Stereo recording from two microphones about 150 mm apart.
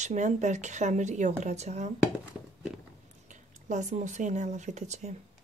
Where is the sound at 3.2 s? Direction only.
55° right (ahead or behind).